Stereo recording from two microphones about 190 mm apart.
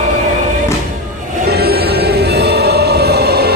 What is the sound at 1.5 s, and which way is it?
Music, 55° right (ahead or behind).